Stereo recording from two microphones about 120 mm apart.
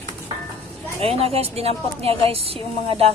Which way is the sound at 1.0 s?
55° right (ahead or behind).